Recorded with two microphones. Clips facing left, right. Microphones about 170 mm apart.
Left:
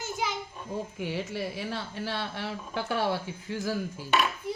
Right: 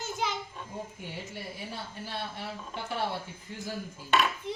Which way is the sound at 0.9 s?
90° left.